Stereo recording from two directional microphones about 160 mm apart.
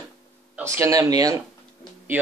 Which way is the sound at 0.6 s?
15° right (ahead or behind).